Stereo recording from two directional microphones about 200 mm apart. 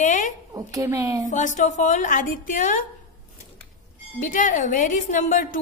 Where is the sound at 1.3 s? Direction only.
40° left (ahead or behind).